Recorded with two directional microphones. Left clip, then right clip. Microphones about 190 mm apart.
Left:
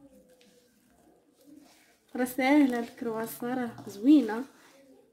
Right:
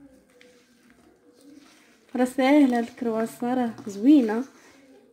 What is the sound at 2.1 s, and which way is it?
Speech, 30° right (ahead or behind).